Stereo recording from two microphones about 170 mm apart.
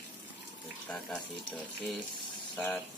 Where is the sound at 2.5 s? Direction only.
5° left (ahead or behind).